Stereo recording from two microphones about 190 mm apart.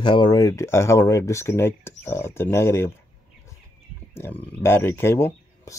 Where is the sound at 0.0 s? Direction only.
25° left (ahead or behind).